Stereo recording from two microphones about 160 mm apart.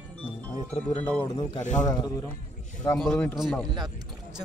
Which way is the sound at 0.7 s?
35° left (ahead or behind).